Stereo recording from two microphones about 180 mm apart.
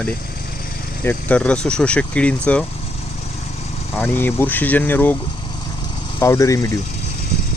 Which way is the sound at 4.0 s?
10° left (ahead or behind).